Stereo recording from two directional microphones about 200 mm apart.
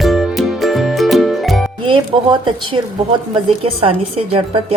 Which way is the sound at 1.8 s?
25° right (ahead or behind).